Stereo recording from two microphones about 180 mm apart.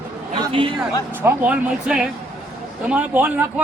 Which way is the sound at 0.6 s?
25° right (ahead or behind).